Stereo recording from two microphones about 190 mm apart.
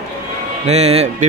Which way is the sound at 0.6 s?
35° right (ahead or behind).